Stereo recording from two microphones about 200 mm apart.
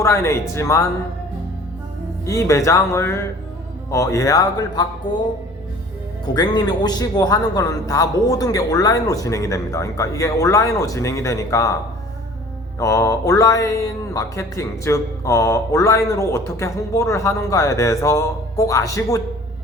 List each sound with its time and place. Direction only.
0.0 s speech: 15° left (ahead or behind)
2.2 s speech: 15° left (ahead or behind)
6.2 s speech: 20° left (ahead or behind)
12.8 s speech: 15° left (ahead or behind)